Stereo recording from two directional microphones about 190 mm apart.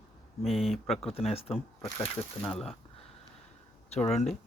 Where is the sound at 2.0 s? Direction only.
10° left (ahead or behind).